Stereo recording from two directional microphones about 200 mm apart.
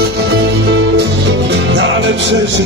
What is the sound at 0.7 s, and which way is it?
Music, 60° right (ahead or behind).